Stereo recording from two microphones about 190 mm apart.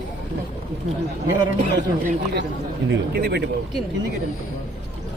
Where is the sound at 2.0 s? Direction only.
60° right (ahead or behind).